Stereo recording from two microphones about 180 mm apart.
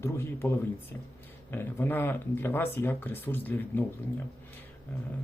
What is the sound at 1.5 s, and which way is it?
Speech, 10° left (ahead or behind).